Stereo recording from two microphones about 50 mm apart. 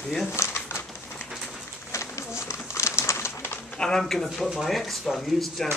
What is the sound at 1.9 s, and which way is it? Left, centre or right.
Bird, left.